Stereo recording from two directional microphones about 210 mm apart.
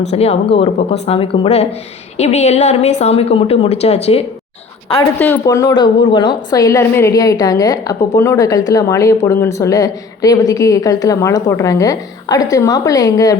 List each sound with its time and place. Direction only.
0.1 s a woman's voice: 30° left (ahead or behind)
5.2 s speech: 10° left (ahead or behind)